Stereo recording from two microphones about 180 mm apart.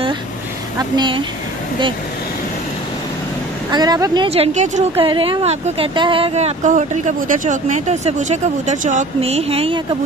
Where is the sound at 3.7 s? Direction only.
20° right (ahead or behind).